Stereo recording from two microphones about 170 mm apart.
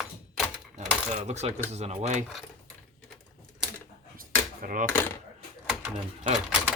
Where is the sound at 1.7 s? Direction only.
40° right (ahead or behind).